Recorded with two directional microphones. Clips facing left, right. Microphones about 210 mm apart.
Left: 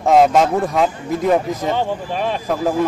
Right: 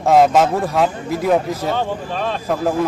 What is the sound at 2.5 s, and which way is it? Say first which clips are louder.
Speech: even; 5° left (ahead or behind).